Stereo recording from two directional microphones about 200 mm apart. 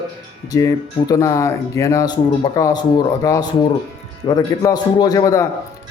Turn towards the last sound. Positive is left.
turn(degrees=15)  # may be behind; listen again after turning